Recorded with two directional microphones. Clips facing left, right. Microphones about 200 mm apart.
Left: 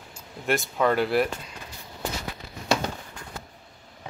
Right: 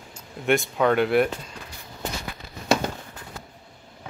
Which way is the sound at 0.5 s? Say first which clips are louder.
Right 3 dB; centre (ahead or behind).